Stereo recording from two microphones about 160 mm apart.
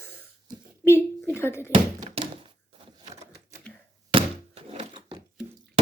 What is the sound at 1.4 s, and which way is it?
Speech, 15° left (ahead or behind).